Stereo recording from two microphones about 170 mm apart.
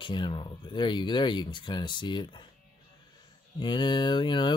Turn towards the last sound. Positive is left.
turn(degrees=25)  # may be behind; listen again after turning